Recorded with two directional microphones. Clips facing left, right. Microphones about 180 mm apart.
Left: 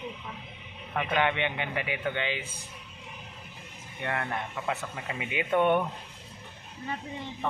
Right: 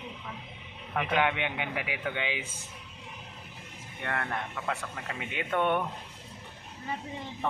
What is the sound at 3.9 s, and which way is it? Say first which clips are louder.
Speech: left 1 dB; 5° left (ahead or behind).